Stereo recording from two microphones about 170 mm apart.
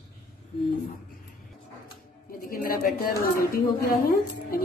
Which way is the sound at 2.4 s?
60° left (ahead or behind).